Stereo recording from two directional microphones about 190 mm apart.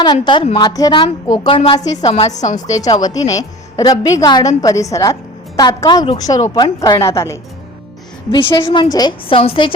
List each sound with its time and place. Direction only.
0.0 s a woman's voice: 25° left (ahead or behind)
2.8 s a woman's voice: 20° left (ahead or behind)
8.6 s a woman's voice: 25° left (ahead or behind)